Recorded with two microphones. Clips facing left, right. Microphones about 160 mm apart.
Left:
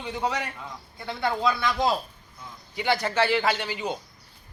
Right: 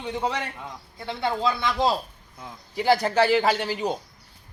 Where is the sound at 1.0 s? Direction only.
25° right (ahead or behind).